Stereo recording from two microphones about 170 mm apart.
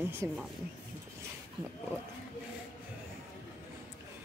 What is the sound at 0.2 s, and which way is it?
Speech, 15° right (ahead or behind).